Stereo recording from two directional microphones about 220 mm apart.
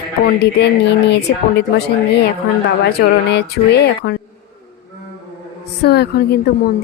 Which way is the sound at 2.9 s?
50° left (ahead or behind).